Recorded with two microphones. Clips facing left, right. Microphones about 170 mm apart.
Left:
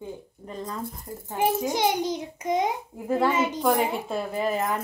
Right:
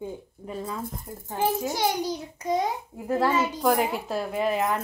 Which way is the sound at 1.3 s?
20° left (ahead or behind).